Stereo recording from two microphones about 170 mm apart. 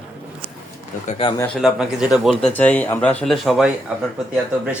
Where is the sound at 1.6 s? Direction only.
Centre (ahead or behind).